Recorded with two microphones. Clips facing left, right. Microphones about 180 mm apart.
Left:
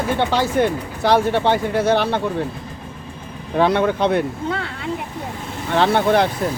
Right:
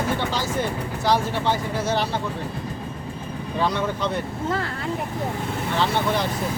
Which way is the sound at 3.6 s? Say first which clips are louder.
Left 8 dB; 60° left (ahead or behind).